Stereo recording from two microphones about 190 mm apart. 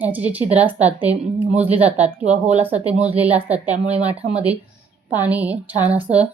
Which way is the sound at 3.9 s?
35° right (ahead or behind).